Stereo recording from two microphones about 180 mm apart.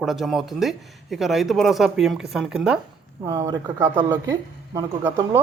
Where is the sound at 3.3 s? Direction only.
15° right (ahead or behind).